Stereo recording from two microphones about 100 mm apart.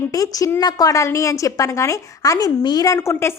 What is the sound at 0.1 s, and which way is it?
A woman's voice, 35° left (ahead or behind).